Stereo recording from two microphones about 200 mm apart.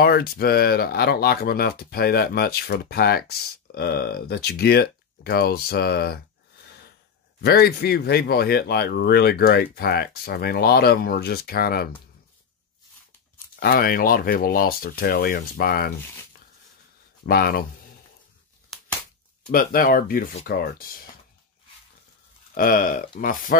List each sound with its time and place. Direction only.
0.0 s speech: 50° left (ahead or behind)
7.4 s speech: 50° left (ahead or behind)
13.6 s speech: 50° left (ahead or behind)
17.3 s speech: 50° left (ahead or behind)
18.7 s a sound: centre (ahead or behind)
19.5 s speech: 45° left (ahead or behind)
22.5 s speech: 45° left (ahead or behind)